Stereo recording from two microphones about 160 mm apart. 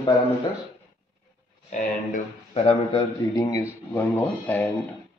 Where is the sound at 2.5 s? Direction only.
40° left (ahead or behind).